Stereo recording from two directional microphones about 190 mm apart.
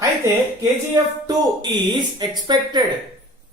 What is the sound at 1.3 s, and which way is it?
A man's voice, 25° right (ahead or behind).